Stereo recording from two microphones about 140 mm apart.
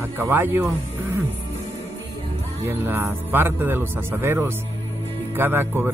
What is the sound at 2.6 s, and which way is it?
Speech, 15° right (ahead or behind).